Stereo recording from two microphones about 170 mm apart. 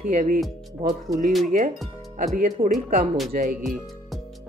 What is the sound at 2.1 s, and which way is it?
Speech, 50° right (ahead or behind).